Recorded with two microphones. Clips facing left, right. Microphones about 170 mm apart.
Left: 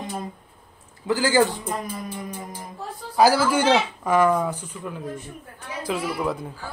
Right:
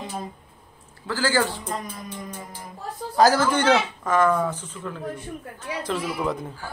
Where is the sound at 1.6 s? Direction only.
5° left (ahead or behind).